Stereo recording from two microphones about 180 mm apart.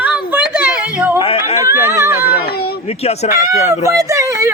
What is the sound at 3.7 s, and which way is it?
Speech, 15° right (ahead or behind).